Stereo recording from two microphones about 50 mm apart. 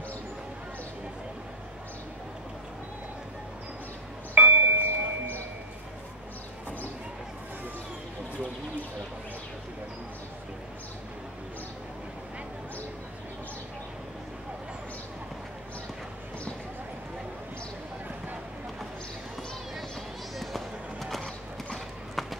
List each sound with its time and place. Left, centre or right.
4.4 s a sound: right
20.3 s music: centre
21.7 s clip-clop: centre